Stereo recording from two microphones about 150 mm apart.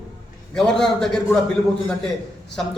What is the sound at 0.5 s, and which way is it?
Speech, 5° left (ahead or behind).